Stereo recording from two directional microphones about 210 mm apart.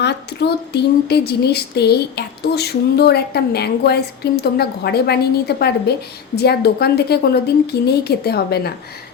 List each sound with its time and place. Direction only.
0.0 s speech: 55° left (ahead or behind)